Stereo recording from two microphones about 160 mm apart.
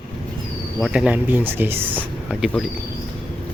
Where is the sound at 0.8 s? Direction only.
5° right (ahead or behind).